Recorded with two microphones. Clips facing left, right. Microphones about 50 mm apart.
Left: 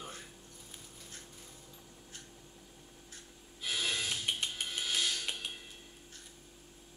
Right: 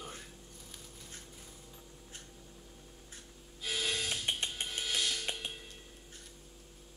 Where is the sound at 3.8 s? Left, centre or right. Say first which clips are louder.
Even; centre.